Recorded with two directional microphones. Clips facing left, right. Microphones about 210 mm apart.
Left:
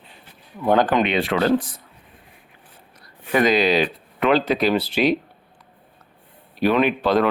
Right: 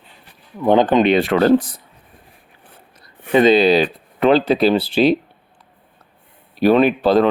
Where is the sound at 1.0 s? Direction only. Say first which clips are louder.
Right 6 dB; 40° right (ahead or behind).